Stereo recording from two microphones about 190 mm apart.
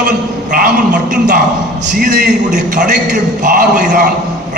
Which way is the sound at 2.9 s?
45° right (ahead or behind).